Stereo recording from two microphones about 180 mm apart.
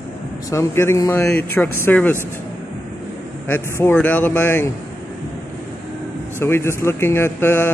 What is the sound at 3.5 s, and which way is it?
Speech, 10° left (ahead or behind).